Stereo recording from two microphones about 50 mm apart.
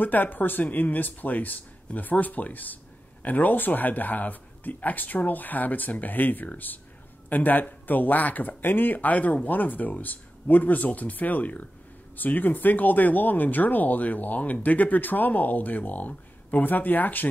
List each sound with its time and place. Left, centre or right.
0.0 s speech: left